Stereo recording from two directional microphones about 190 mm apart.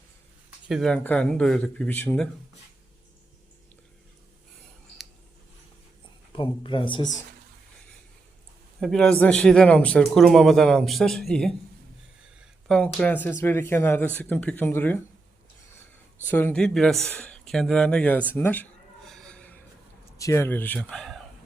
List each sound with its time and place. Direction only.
0.7 s speech: centre (ahead or behind)
6.3 s speech: 25° left (ahead or behind)
8.8 s speech: 5° left (ahead or behind)
16.2 s speech: 10° left (ahead or behind)
18.3 s a sound: 10° left (ahead or behind)
20.1 s speech: 15° left (ahead or behind)